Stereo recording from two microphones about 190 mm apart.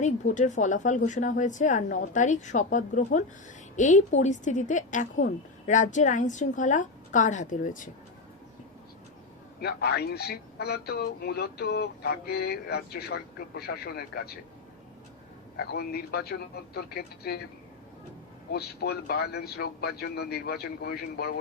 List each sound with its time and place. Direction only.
0.0 s a woman's voice: 40° left (ahead or behind)
9.6 s a man's voice: 60° left (ahead or behind)
15.5 s a man's voice: 55° left (ahead or behind)
18.5 s a man's voice: 55° left (ahead or behind)